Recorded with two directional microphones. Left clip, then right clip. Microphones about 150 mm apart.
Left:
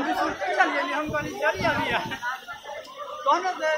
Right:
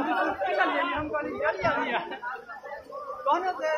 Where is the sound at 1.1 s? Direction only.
70° left (ahead or behind).